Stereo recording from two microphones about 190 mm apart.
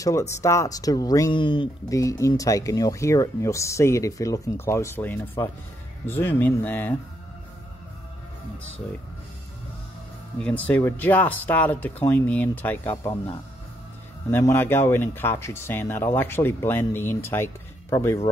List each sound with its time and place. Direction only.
0.3 s speech: 15° left (ahead or behind)
10.4 s speech: 10° left (ahead or behind)